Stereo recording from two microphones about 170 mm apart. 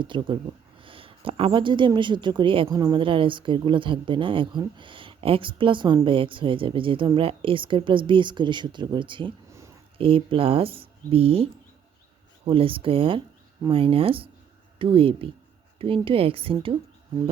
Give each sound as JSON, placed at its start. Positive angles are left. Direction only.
{"t": 0.0, "sound": "a woman's voice", "side_deg": -30}
{"t": 12.5, "sound": "speech", "side_deg": -30}